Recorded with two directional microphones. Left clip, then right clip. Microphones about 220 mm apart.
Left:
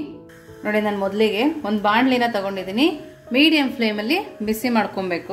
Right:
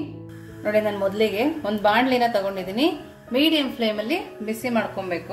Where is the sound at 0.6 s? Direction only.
15° left (ahead or behind).